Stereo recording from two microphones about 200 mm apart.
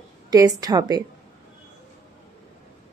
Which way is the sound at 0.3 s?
20° right (ahead or behind).